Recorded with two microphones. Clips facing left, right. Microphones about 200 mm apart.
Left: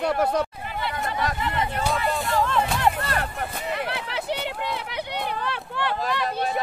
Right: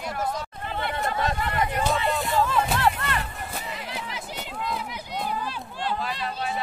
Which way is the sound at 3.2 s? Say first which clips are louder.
Left 4 dB; 65° left (ahead or behind).